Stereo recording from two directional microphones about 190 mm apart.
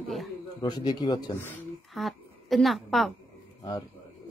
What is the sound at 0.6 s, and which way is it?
Speech, 20° left (ahead or behind).